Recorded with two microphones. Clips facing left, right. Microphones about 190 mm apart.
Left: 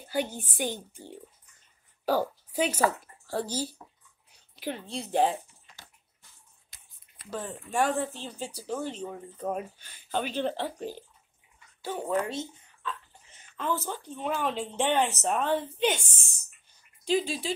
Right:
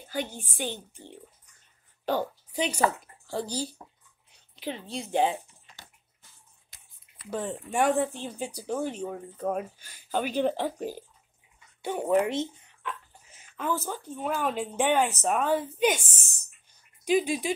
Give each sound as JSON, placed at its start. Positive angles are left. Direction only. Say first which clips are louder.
{"t": 0.1, "sound": "a child's voice", "louder": "left 3 dB", "side_deg": 10}
{"t": 7.2, "sound": "speech", "louder": "right 4 dB", "side_deg": -20}
{"t": 13.3, "sound": "a sound", "louder": "right 1 dB", "side_deg": -10}
{"t": 14.0, "sound": "speech", "louder": "right 1 dB", "side_deg": -5}
{"t": 17.0, "sound": "speech", "louder": "right 3 dB", "side_deg": -15}